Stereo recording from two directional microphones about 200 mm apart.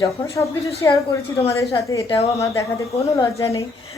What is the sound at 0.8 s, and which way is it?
A woman's voice, 15° left (ahead or behind).